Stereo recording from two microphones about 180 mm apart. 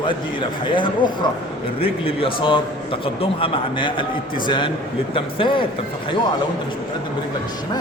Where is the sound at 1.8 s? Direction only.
30° left (ahead or behind).